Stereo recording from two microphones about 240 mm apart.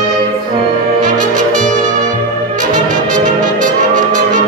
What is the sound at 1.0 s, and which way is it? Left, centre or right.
Brass instrument, right.